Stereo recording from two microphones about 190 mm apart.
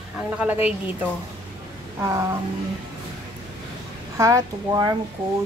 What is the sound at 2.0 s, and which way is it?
Speech, 15° right (ahead or behind).